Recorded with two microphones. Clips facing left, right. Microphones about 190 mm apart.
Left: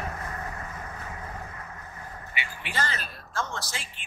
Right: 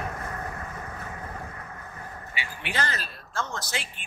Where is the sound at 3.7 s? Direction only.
65° right (ahead or behind).